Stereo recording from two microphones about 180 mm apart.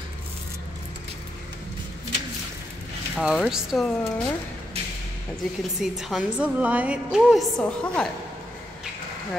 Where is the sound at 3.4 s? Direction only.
Centre (ahead or behind).